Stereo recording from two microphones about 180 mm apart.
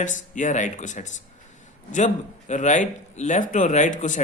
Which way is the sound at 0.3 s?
45° left (ahead or behind).